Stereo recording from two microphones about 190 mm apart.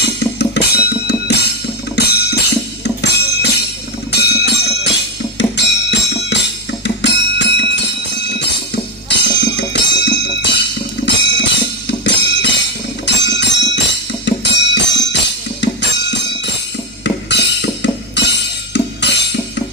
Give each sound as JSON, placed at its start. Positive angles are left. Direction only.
{"t": 0.0, "sound": "music", "side_deg": 60}